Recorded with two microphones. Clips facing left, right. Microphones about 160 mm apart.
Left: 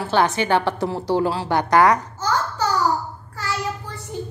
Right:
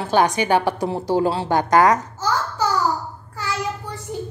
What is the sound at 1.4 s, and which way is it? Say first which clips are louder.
Speech: even; 40° right (ahead or behind).